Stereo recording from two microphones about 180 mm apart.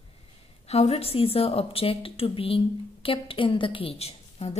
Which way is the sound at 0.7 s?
35° left (ahead or behind).